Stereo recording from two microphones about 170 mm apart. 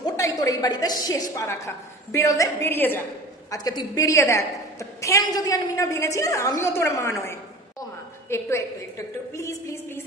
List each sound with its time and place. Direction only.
0.0 s a woman's voice: 20° left (ahead or behind)